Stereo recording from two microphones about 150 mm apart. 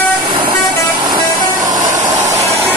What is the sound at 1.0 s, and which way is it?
Vehicle, 25° right (ahead or behind).